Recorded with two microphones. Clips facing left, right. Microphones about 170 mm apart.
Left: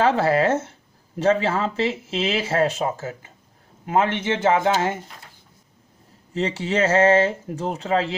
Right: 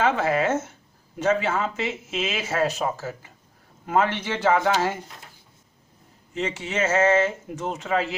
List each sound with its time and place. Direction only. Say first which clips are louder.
0.0 s speech: left 3 dB; 35° left (ahead or behind)
6.3 s speech: left 5 dB; 35° left (ahead or behind)